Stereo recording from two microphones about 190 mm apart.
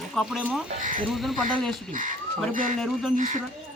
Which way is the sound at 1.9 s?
45° right (ahead or behind).